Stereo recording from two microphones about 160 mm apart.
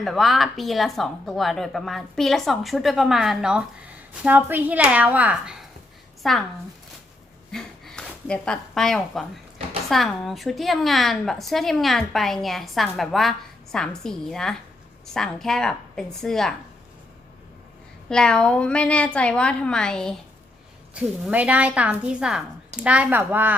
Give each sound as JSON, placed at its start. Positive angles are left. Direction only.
{"t": 0.0, "sound": "a woman's voice", "side_deg": 0}
{"t": 7.5, "sound": "a sound", "side_deg": 5}
{"t": 9.9, "sound": "a woman's voice", "side_deg": 0}
{"t": 18.1, "sound": "a woman's voice", "side_deg": 5}
{"t": 20.9, "sound": "speech", "side_deg": -10}